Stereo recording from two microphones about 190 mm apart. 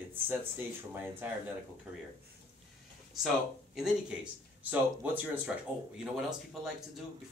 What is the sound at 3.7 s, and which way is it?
Speech, 5° right (ahead or behind).